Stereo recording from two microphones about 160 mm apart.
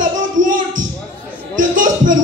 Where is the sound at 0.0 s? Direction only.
55° right (ahead or behind).